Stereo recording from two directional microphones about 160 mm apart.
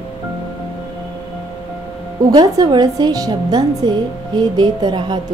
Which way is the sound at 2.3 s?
25° right (ahead or behind).